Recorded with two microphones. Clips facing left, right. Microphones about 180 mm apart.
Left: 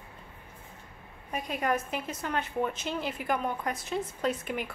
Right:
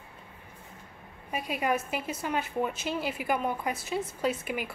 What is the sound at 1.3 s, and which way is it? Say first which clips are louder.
A woman's voice: right 1 dB; 5° right (ahead or behind).